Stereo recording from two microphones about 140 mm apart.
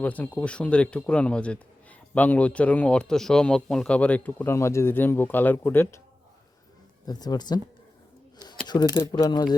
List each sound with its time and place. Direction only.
0.0 s a man's voice: 10° left (ahead or behind)
7.1 s speech: 30° left (ahead or behind)
8.4 s a sound: 30° left (ahead or behind)
9.0 s speech: 25° left (ahead or behind)